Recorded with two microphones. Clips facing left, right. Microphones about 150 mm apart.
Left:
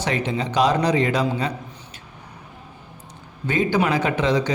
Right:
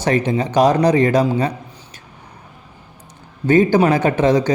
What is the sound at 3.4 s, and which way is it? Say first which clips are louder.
Speech: right 8 dB; 45° right (ahead or behind).